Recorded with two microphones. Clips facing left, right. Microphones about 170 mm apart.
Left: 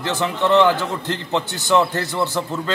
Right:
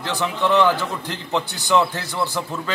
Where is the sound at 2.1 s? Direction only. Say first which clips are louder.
Left 3 dB; 20° left (ahead or behind).